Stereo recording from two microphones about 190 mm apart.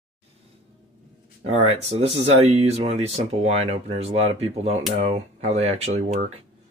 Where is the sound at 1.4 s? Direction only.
35° right (ahead or behind).